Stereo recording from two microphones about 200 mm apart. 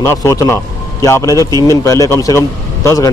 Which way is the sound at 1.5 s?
20° right (ahead or behind).